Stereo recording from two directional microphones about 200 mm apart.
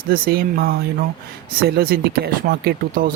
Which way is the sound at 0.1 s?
45° right (ahead or behind).